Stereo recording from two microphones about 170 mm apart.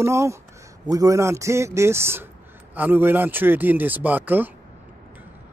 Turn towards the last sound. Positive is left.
turn(degrees=-10)  # may be behind; listen again after turning